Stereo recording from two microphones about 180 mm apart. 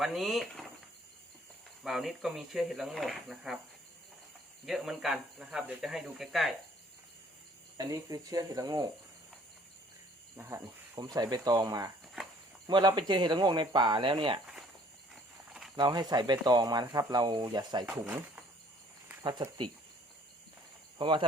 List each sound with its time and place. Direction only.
0.0 s speech: centre (ahead or behind)
1.8 s speech: centre (ahead or behind)
4.6 s speech: centre (ahead or behind)
7.8 s speech: 20° right (ahead or behind)
10.3 s speech: 15° right (ahead or behind)
15.1 s walk: 5° right (ahead or behind)
15.7 s speech: 25° right (ahead or behind)
17.8 s speech: 10° right (ahead or behind)
19.2 s speech: 25° right (ahead or behind)
21.0 s speech: 25° right (ahead or behind)